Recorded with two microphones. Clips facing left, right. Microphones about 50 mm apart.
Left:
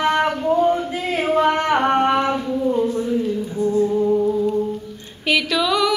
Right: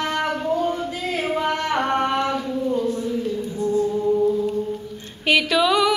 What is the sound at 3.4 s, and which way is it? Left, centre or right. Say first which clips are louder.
Music: left 3 dB; centre.